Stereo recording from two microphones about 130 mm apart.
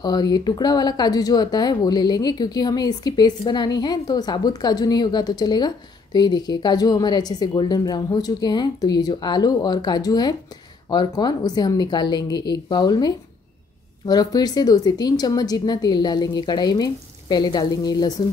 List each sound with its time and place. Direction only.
0.0 s speech: 30° left (ahead or behind)